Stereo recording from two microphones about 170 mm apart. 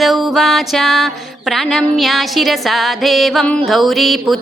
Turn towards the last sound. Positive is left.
turn(degrees=0)  # may be behind; listen again after turning